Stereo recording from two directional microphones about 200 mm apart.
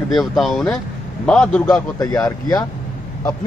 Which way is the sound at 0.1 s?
Centre (ahead or behind).